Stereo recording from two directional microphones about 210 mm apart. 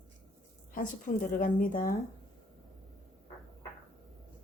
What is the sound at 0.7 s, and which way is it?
A woman's voice, 40° left (ahead or behind).